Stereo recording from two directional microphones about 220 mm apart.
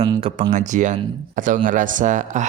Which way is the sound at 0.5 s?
35° right (ahead or behind).